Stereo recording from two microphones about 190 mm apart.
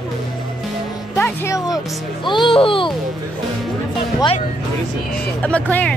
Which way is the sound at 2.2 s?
25° left (ahead or behind).